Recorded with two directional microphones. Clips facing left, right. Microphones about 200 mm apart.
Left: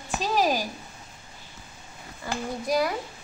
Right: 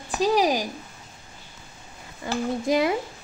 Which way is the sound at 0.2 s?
15° right (ahead or behind).